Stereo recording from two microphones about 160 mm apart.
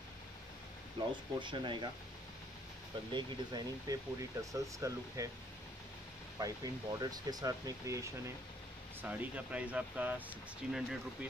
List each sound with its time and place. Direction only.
1.4 s speech: 30° right (ahead or behind)
3.1 s speech: 30° right (ahead or behind)
6.4 s speech: 20° right (ahead or behind); by 11.2 s 5° right (ahead or behind)